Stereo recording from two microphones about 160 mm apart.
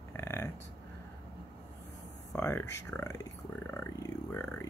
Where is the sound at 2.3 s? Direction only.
15° left (ahead or behind).